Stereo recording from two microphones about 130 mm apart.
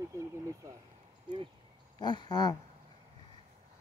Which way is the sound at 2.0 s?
35° left (ahead or behind).